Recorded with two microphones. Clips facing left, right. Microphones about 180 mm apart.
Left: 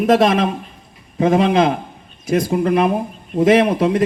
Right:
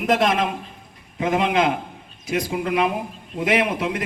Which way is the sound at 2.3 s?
45° left (ahead or behind).